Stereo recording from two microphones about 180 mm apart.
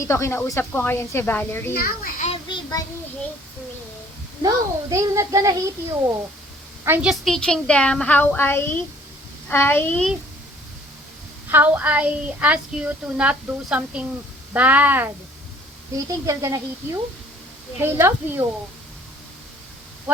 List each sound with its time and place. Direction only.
0.0 s speech: 15° left (ahead or behind)
1.7 s a child's voice: 55° left (ahead or behind)
2.3 s child singing: 25° left (ahead or behind)
4.4 s a woman's voice: 20° right (ahead or behind)
7.1 s speech: centre (ahead or behind)
11.4 s a woman's voice: 10° right (ahead or behind)